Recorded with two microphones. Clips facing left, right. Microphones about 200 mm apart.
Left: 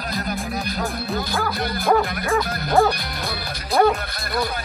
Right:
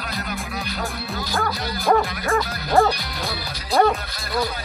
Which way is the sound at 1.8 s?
Centre (ahead or behind).